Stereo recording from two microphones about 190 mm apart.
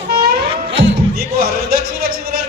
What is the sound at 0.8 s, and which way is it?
Speech, 55° right (ahead or behind).